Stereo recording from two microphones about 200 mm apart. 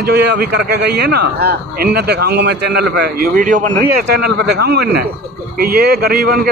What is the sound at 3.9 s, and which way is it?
A man's voice, 55° right (ahead or behind).